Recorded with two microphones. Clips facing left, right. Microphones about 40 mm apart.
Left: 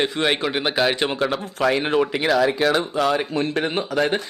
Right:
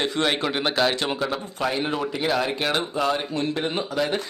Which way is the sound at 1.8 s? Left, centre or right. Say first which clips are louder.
Left 6 dB; left.